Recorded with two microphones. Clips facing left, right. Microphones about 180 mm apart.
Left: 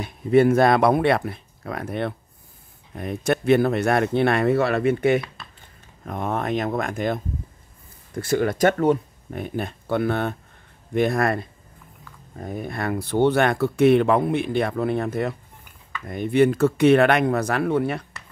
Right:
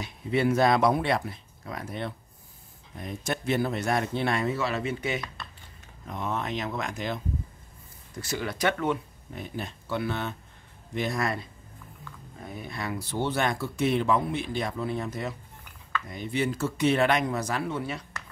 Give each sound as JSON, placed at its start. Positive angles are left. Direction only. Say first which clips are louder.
{"t": 0.0, "sound": "speech", "louder": "left 9 dB", "side_deg": 50}
{"t": 8.2, "sound": "speech", "louder": "left 10 dB", "side_deg": 55}
{"t": 9.3, "sound": "speech", "louder": "left 8 dB", "side_deg": 55}